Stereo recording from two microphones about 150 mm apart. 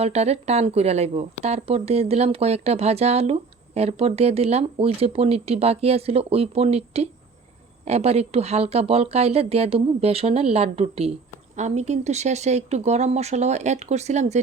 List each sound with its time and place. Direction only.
0.0 s speech: 45° right (ahead or behind)